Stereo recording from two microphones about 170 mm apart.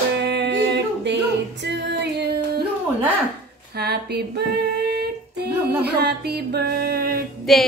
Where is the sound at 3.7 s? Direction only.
70° right (ahead or behind).